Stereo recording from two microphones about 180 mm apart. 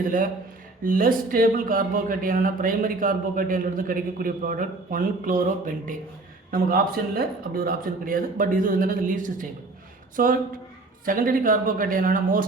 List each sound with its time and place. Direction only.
0.0 s speech: 50° right (ahead or behind)